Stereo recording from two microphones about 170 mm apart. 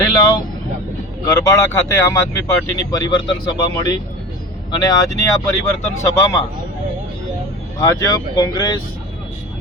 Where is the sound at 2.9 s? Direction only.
25° left (ahead or behind).